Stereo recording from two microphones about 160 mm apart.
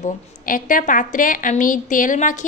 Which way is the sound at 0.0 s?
55° left (ahead or behind).